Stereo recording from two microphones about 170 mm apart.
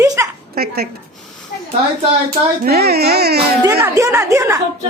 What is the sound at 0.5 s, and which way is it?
Speech, 65° right (ahead or behind).